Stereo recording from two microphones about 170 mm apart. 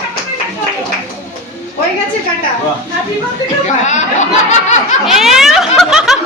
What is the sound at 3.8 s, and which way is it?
Snicker, 45° left (ahead or behind).